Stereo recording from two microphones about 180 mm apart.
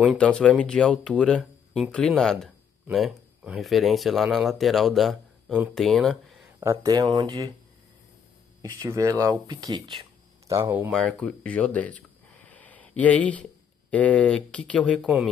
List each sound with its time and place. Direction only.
0.0 s speech: centre (ahead or behind)
6.6 s speech: 15° right (ahead or behind)
8.6 s speech: 15° right (ahead or behind)
10.5 s speech: 15° right (ahead or behind)
10.9 s speech: 5° left (ahead or behind)